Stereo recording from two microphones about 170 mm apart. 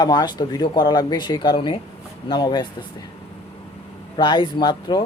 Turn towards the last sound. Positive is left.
turn(degrees=25)  # may be behind; listen again after turning